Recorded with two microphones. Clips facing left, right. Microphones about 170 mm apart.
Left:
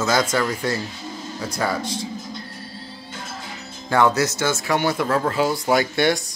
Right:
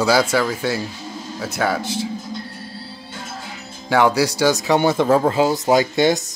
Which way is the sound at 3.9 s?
10° right (ahead or behind).